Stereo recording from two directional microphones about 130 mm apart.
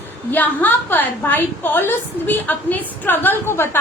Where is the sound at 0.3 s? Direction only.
15° left (ahead or behind).